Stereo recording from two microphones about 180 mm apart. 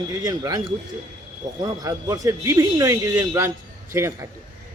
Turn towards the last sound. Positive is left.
turn(degrees=-15)  # may be behind; listen again after turning